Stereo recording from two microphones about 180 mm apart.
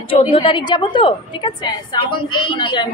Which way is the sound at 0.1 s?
30° left (ahead or behind).